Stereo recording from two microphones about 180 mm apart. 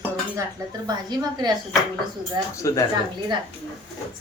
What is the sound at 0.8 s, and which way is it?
Speech, 20° right (ahead or behind).